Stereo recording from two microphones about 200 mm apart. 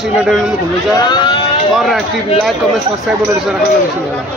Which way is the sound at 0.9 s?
20° left (ahead or behind).